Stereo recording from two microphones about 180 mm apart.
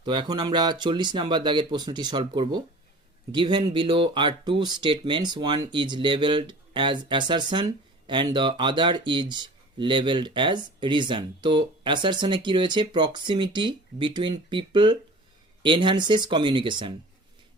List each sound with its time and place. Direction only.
0.0 s speech: 25° right (ahead or behind)